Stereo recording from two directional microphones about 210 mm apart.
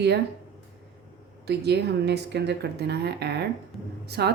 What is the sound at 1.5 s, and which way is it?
Speech, 50° right (ahead or behind).